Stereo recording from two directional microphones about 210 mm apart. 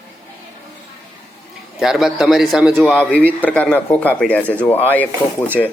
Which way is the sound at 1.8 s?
Centre (ahead or behind).